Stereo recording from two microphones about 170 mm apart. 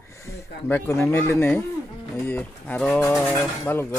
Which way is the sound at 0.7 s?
15° left (ahead or behind).